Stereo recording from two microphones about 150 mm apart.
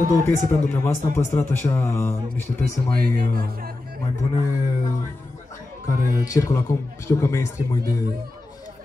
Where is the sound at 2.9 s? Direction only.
90° right.